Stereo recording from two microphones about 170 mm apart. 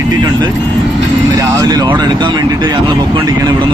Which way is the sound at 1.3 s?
20° right (ahead or behind).